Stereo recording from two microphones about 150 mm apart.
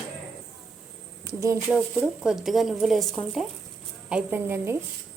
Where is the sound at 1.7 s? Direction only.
5° right (ahead or behind).